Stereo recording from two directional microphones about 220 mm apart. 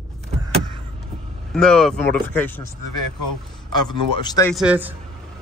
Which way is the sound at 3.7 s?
20° left (ahead or behind).